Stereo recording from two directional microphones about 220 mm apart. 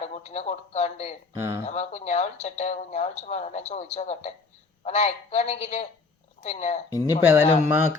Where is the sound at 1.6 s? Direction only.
30° left (ahead or behind).